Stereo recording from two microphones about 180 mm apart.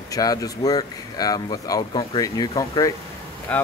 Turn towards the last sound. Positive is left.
turn(degrees=10)  # may be behind; listen again after turning